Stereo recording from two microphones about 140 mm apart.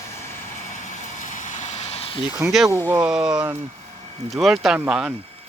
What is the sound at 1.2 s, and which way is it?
Vehicle, 65° left (ahead or behind).